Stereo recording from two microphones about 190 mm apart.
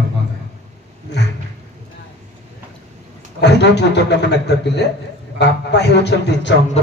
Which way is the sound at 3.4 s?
65° left (ahead or behind).